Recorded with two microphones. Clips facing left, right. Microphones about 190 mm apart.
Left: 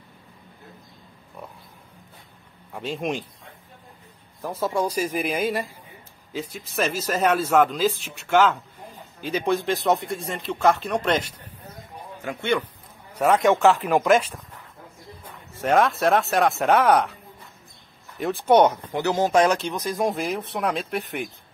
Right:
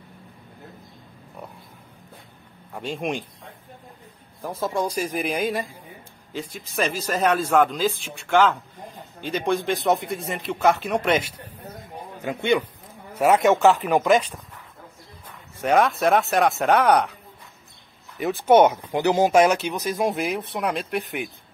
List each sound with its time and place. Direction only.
2.7 s speech: centre (ahead or behind)
4.6 s speech: 10° left (ahead or behind)
15.2 s speech: centre (ahead or behind)